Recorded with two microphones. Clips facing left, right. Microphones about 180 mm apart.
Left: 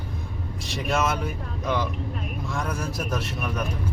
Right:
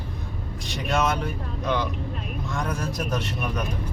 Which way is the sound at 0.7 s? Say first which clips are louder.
Right 1 dB; centre (ahead or behind).